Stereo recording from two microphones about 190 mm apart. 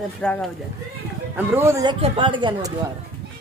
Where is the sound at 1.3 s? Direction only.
10° right (ahead or behind).